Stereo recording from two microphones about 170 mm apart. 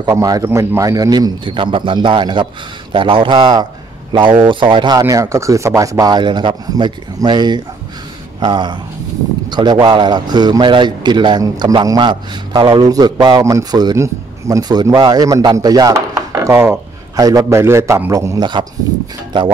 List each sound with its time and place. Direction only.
0.0 s a man's voice: 20° right (ahead or behind)